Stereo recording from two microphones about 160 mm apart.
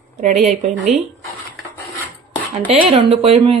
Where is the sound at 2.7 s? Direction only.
40° right (ahead or behind).